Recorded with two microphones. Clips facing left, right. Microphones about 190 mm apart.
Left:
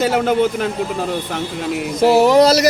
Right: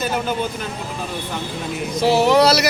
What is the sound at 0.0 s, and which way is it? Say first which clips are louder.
Speech: left 7 dB; 85° left.